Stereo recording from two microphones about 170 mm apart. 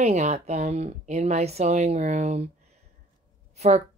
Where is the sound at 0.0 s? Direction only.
40° right (ahead or behind).